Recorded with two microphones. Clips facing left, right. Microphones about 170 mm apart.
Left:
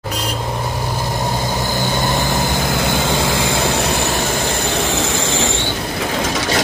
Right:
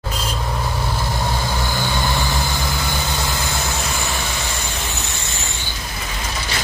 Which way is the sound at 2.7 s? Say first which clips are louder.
Left 7 dB; 80° left.